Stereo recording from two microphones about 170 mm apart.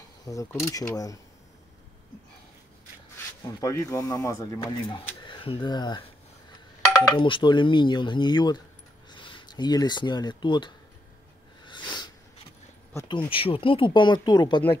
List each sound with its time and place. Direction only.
0.2 s speech: 20° left (ahead or behind)
3.6 s speech: 20° left (ahead or behind)
11.6 s a sound: 25° left (ahead or behind)
13.3 s speech: 30° left (ahead or behind)